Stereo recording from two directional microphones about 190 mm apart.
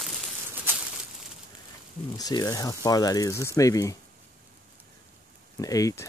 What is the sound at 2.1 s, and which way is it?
Speech, 20° left (ahead or behind).